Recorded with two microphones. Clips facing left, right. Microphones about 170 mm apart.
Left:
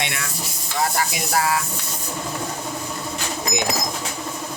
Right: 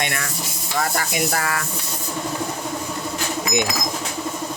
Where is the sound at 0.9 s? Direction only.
55° right (ahead or behind).